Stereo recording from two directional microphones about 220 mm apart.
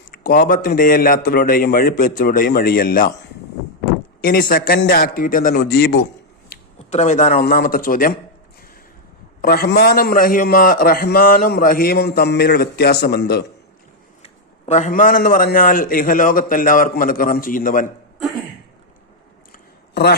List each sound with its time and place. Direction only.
0.3 s a man's voice: 40° left (ahead or behind)
4.2 s a man's voice: 40° left (ahead or behind)
6.7 s a man's voice: 30° left (ahead or behind)
9.4 s a man's voice: 45° left (ahead or behind)
14.7 s a man's voice: 35° left (ahead or behind)
19.9 s speech: 45° left (ahead or behind)